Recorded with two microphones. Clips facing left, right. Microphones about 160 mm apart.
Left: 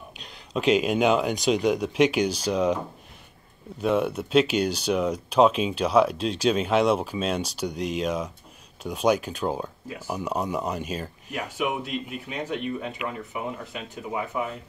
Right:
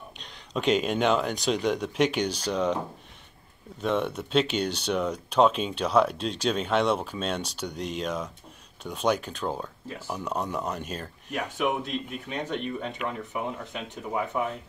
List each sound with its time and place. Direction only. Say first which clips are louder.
0.2 s speech: left 3 dB; 5° left (ahead or behind)
3.8 s speech: left 3 dB; 5° left (ahead or behind)